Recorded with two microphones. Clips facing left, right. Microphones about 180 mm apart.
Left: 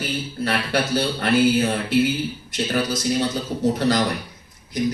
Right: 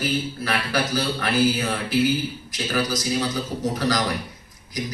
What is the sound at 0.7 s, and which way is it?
A man's voice, 25° left (ahead or behind).